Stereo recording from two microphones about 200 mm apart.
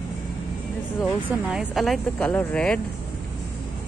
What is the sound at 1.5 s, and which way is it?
Speech, centre (ahead or behind).